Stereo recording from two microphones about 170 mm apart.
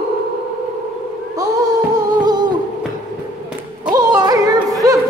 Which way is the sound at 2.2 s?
25° right (ahead or behind).